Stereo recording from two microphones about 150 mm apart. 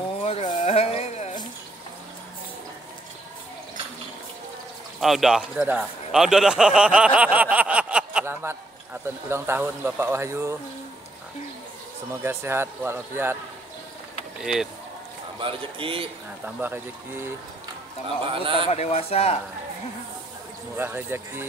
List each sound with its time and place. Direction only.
0.2 s a sound: 45° left (ahead or behind)
5.0 s speech: centre (ahead or behind); by 10.6 s 20° right (ahead or behind)
12.1 s speech: 15° right (ahead or behind)
14.4 s speech: 5° right (ahead or behind)
15.3 s speech: 35° right (ahead or behind)
16.4 s speech: 10° right (ahead or behind)
18.2 s a man's voice: 35° right (ahead or behind)
18.7 s speech: 45° left (ahead or behind)
20.7 s speech: 15° right (ahead or behind)